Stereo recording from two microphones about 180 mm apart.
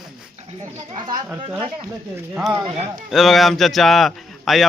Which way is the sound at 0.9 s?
25° right (ahead or behind).